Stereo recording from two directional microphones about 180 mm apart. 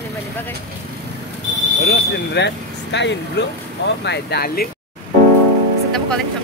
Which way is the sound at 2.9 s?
75° left (ahead or behind).